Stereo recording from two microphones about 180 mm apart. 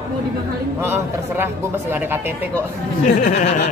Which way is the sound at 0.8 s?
15° right (ahead or behind).